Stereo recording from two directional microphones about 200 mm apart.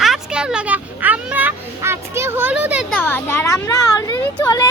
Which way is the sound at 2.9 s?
10° left (ahead or behind).